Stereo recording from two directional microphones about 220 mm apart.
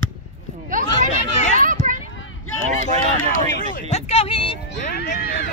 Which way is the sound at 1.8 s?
35° right (ahead or behind).